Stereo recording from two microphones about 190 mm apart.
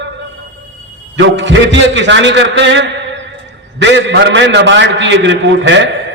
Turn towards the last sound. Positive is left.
turn(degrees=-70)  # may be behind; listen again after turning